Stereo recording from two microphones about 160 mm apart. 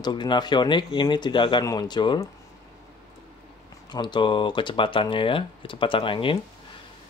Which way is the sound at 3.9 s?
25° left (ahead or behind).